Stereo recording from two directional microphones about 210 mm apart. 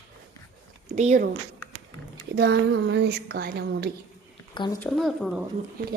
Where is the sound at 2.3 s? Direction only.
50° right (ahead or behind).